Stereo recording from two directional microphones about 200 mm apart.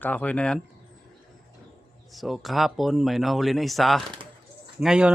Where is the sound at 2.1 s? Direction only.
Centre (ahead or behind).